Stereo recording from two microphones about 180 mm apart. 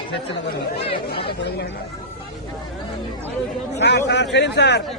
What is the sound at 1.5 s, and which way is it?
Speech, 75° left (ahead or behind).